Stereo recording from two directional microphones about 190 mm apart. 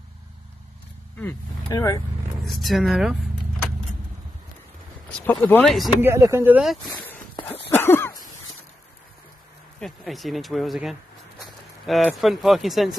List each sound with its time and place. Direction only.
1.2 s speech: 15° left (ahead or behind)
2.4 s speech: centre (ahead or behind)
5.2 s speech: 10° left (ahead or behind)
5.9 s speech: 15° right (ahead or behind)
7.7 s cough: 10° left (ahead or behind)
9.8 s speech: centre (ahead or behind)